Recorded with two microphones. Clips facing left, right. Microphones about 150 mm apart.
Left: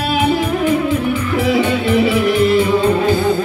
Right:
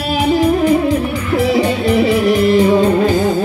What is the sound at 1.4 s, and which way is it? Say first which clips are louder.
Music: right 2 dB; 40° right (ahead or behind).